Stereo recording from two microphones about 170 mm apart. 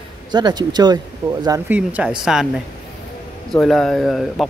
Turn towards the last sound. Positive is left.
turn(degrees=0)  # may be behind; listen again after turning